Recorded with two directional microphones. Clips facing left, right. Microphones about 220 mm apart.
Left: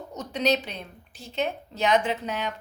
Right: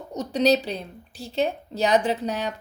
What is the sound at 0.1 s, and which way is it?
A woman's voice, 30° right (ahead or behind).